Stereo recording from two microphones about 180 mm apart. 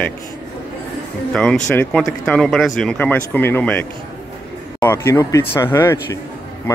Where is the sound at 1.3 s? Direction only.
5° left (ahead or behind).